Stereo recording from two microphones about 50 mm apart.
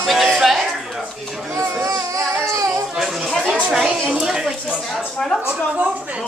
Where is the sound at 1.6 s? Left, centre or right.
Right.